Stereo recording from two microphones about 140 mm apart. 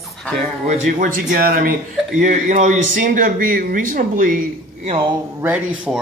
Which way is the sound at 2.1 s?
65° right (ahead or behind).